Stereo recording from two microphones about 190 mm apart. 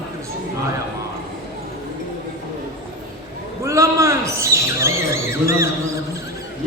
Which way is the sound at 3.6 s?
15° right (ahead or behind).